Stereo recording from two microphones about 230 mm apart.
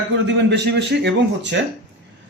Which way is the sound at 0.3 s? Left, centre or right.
Right.